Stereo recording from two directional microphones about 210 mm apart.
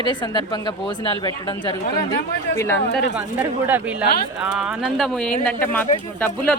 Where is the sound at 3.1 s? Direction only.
10° right (ahead or behind); by 6.3 s 10° left (ahead or behind).